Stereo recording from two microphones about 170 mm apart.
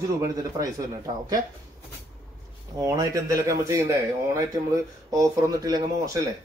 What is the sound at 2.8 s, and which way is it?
Speech, 20° right (ahead or behind).